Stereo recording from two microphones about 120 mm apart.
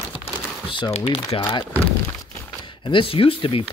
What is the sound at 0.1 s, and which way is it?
Crumpling, 45° left (ahead or behind).